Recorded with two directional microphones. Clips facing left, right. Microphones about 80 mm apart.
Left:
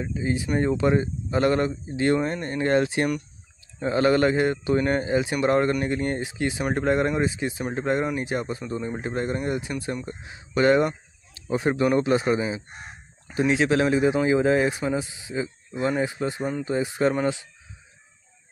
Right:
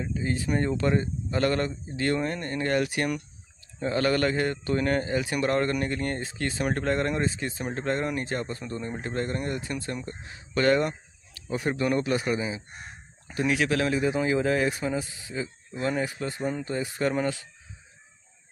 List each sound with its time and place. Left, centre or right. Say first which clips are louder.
0.0 s a man's voice: left 2 dB; centre